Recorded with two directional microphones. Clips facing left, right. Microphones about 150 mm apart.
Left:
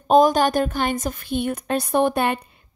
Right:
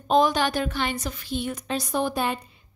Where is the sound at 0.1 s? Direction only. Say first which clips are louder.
Left 5 dB; 45° left (ahead or behind).